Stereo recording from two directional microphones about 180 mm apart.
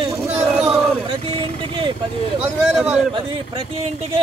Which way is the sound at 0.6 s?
30° right (ahead or behind).